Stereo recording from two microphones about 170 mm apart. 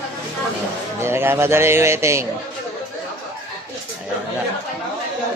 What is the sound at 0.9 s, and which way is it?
A man's voice, 15° right (ahead or behind).